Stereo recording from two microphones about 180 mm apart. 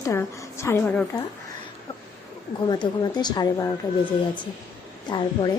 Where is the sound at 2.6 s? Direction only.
25° left (ahead or behind).